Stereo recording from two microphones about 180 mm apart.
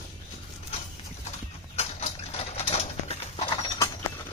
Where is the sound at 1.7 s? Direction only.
35° left (ahead or behind).